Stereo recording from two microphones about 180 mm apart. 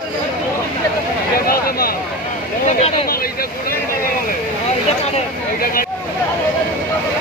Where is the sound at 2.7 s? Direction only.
35° left (ahead or behind).